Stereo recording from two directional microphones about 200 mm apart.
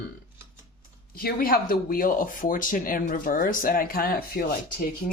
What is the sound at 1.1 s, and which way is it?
Speech, 45° left (ahead or behind).